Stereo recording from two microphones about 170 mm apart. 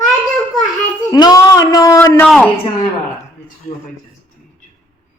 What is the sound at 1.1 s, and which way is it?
Speech, 25° left (ahead or behind).